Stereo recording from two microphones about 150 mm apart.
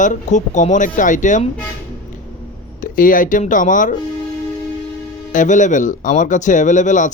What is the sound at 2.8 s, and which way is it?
Speech, 65° left (ahead or behind).